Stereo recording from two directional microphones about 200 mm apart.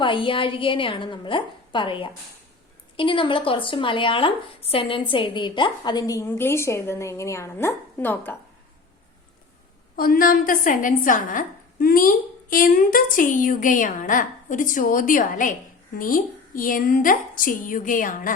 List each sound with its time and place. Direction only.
0.0 s speech: 25° left (ahead or behind); by 8.4 s 10° left (ahead or behind)
9.9 s a woman's voice: 45° left (ahead or behind)